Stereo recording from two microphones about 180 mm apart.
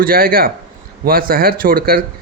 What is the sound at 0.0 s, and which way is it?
Speech, 55° right (ahead or behind).